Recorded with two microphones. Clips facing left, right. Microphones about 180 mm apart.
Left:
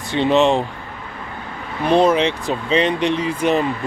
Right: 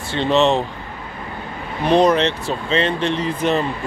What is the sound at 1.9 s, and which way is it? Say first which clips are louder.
Speech: even; 5° left (ahead or behind).